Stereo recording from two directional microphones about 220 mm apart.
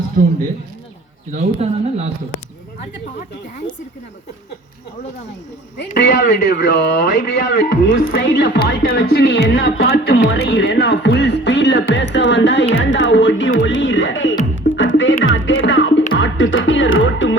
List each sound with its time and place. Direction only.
0.2 s speech: 40° right (ahead or behind)
1.3 s speech: 30° right (ahead or behind)
6.5 s speech: 50° left (ahead or behind)
13.6 s music: 55° left (ahead or behind)